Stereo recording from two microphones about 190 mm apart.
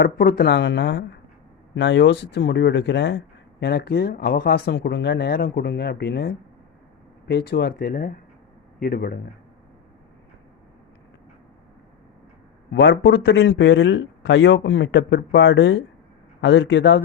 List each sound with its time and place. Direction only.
0.0 s a man's voice: 55° left (ahead or behind)
12.7 s a man's voice: 75° left (ahead or behind)